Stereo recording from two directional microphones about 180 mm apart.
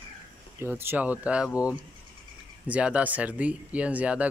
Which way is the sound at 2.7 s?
5° right (ahead or behind).